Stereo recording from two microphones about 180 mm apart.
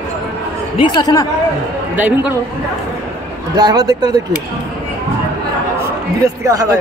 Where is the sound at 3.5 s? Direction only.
25° right (ahead or behind).